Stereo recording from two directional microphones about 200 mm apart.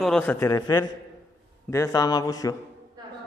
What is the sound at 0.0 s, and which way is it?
Speech, 5° left (ahead or behind).